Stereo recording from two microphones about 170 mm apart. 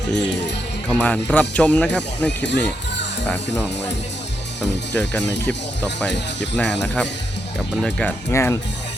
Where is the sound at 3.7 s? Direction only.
90° left.